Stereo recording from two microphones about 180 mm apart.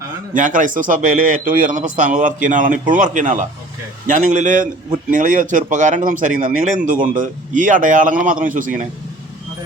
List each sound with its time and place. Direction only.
0.3 s a man's voice: 45° right (ahead or behind)